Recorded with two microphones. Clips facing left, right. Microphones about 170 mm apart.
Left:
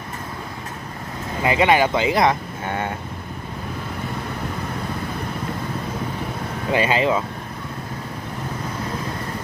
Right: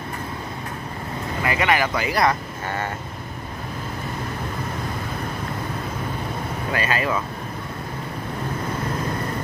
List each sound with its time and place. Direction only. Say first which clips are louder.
1.4 s speech: left 5 dB; 20° left (ahead or behind)
6.7 s speech: left 5 dB; 20° left (ahead or behind)